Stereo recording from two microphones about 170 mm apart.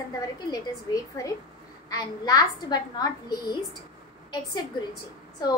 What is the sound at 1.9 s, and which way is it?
A woman's voice, 25° left (ahead or behind).